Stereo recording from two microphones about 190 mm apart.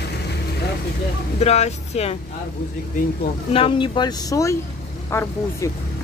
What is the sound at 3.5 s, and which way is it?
A woman's voice, 30° left (ahead or behind).